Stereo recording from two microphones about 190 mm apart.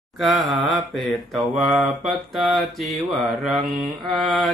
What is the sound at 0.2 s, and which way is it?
Mantra, centre (ahead or behind).